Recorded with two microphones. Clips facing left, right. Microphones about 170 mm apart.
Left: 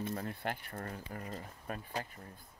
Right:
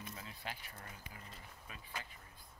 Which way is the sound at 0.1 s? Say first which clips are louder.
Left 10 dB; 60° left (ahead or behind).